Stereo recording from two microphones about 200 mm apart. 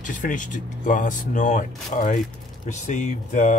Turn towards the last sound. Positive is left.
turn(degrees=40)  # may be behind; listen again after turning